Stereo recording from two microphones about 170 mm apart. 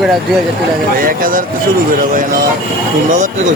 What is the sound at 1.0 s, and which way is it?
Speech, 55° right (ahead or behind).